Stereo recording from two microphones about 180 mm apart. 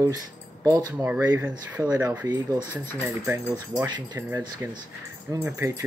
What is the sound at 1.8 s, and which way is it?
Speech, 20° right (ahead or behind).